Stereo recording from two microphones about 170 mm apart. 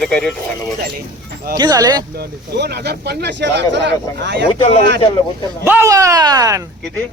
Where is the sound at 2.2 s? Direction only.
75° right (ahead or behind).